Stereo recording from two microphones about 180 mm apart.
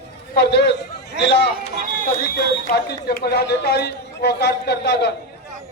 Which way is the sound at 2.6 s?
65° left (ahead or behind).